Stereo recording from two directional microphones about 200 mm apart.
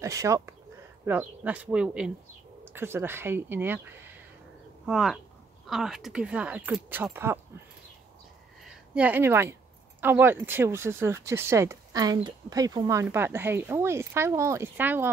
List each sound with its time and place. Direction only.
0.0 s speech: 15° right (ahead or behind)
8.6 s speech: 5° right (ahead or behind)